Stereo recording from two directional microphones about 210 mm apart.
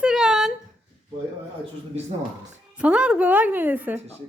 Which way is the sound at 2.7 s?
5° right (ahead or behind).